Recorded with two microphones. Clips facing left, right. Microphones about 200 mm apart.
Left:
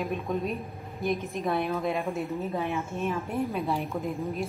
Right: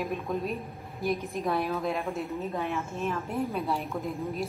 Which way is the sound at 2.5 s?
15° left (ahead or behind).